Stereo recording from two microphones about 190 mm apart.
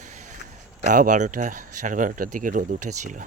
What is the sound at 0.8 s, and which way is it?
Speech, 45° right (ahead or behind).